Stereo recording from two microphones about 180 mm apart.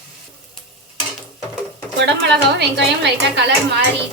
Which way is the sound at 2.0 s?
75° right (ahead or behind).